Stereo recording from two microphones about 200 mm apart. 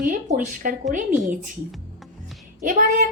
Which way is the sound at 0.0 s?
40° right (ahead or behind).